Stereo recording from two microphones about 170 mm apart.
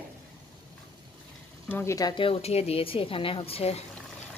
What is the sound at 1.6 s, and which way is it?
Speech, 15° left (ahead or behind).